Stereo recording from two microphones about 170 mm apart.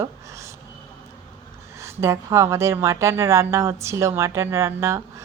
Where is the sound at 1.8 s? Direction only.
15° right (ahead or behind).